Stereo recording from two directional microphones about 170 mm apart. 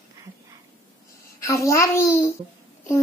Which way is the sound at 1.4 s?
15° left (ahead or behind).